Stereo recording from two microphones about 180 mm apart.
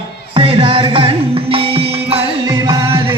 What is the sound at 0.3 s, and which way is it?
Music, 30° right (ahead or behind).